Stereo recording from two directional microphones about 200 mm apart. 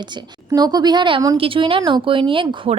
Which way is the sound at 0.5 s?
20° right (ahead or behind).